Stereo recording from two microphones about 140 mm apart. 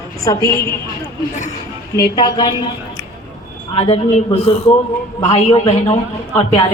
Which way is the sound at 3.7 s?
45° left (ahead or behind).